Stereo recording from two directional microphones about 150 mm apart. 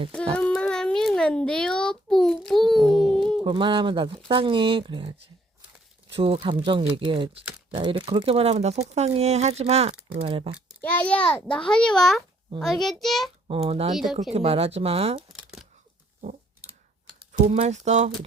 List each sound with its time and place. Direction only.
0.3 s a sound: 5° left (ahead or behind)
3.4 s speech: 35° right (ahead or behind)
6.1 s speech: 40° right (ahead or behind)
10.8 s a child's voice: 10° left (ahead or behind)
13.5 s speech: 40° right (ahead or behind)
13.9 s a child's voice: centre (ahead or behind)
14.3 s speech: 40° right (ahead or behind)
15.3 s crumpling: 5° right (ahead or behind)
17.3 s speech: 50° right (ahead or behind)